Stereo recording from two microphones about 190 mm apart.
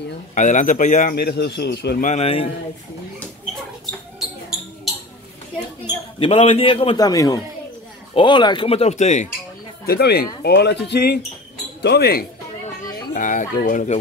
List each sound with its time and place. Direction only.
0.3 s a man's voice: 40° left (ahead or behind); by 2.0 s 60° left (ahead or behind)
2.0 s speech: 30° left (ahead or behind)
6.1 s a man's voice: 30° left (ahead or behind)
9.8 s speech: 55° left (ahead or behind)
13.1 s a man's voice: 40° left (ahead or behind)